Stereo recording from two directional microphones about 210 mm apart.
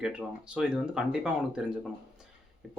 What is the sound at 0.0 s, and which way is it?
Speech, 5° right (ahead or behind).